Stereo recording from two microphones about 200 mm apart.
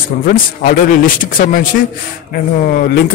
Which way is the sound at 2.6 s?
50° left (ahead or behind).